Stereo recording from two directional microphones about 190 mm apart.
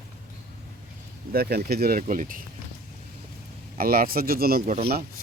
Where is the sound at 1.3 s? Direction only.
55° right (ahead or behind).